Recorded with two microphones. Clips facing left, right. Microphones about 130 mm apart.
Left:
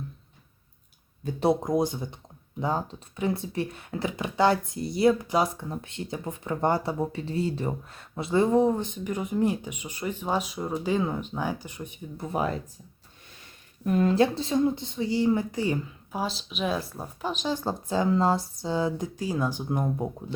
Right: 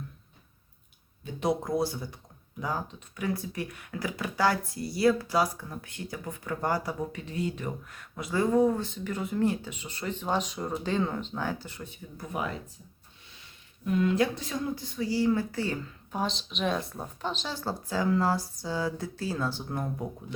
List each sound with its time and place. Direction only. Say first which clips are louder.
1.2 s speech: left 5 dB; 30° left (ahead or behind)
1.6 s speech: left 3 dB; 20° left (ahead or behind)
13.8 s speech: left 3 dB; 40° left (ahead or behind)
14.2 s speech: left 6 dB; 30° left (ahead or behind)